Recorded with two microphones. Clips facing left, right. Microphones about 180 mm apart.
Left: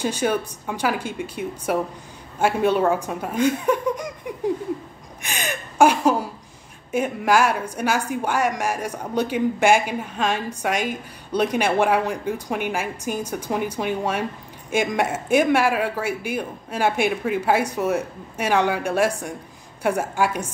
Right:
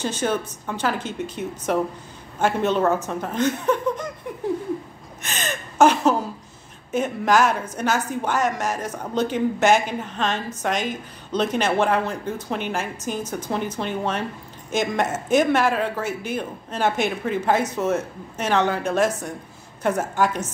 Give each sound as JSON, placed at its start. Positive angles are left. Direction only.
{"t": 0.0, "sound": "a woman's voice", "side_deg": 10}
{"t": 5.2, "sound": "gasp", "side_deg": 10}
{"t": 6.9, "sound": "a woman's voice", "side_deg": 10}